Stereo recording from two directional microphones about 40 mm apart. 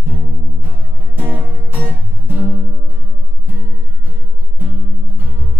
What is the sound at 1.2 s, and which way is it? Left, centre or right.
Music, right.